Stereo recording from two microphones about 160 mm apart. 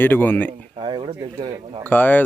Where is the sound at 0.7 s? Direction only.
35° right (ahead or behind).